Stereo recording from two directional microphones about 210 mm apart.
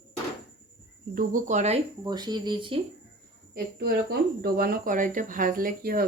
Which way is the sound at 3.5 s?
50° right (ahead or behind).